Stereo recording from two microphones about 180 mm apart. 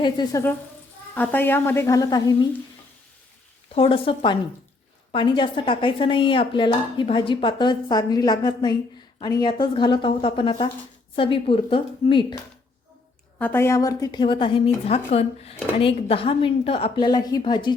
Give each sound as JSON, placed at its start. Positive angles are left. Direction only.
{"t": 0.0, "sound": "a woman's voice", "side_deg": 25}
{"t": 1.1, "sound": "a woman's voice", "side_deg": 10}
{"t": 3.8, "sound": "a woman's voice", "side_deg": 30}
{"t": 13.4, "sound": "a woman's voice", "side_deg": 10}